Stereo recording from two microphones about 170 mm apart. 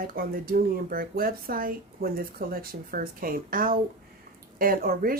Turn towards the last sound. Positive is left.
turn(degrees=-60)  # may be behind; listen again after turning